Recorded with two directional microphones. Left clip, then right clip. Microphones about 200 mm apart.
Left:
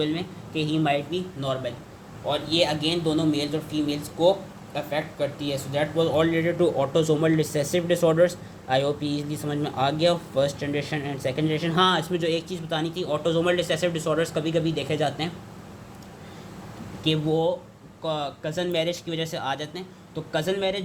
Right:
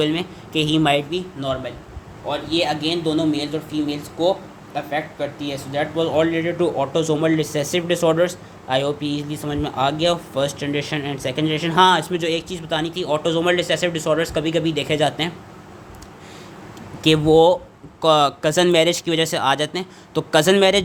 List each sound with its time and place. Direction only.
0.0 s speech: 30° right (ahead or behind)
1.4 s a man's voice: 5° right (ahead or behind)
17.0 s speech: 35° right (ahead or behind)